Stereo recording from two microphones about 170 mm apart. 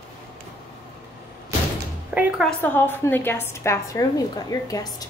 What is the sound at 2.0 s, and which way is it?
Speech, 10° right (ahead or behind).